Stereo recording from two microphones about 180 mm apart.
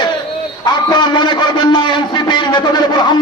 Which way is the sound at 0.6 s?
25° left (ahead or behind).